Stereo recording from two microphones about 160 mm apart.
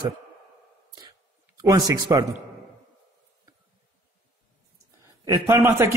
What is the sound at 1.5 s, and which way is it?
Speech, 20° right (ahead or behind).